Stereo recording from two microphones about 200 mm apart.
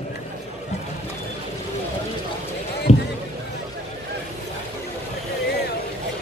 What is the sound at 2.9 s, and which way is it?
Rowboat, 30° left (ahead or behind).